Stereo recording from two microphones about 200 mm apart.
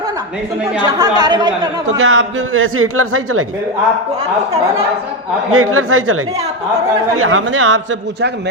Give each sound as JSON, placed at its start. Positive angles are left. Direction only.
{"t": 0.8, "sound": "speech", "side_deg": -20}
{"t": 2.0, "sound": "a man's voice", "side_deg": -90}
{"t": 5.5, "sound": "a man's voice", "side_deg": -90}